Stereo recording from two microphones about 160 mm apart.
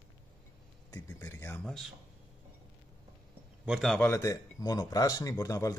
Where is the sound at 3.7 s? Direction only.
Centre (ahead or behind).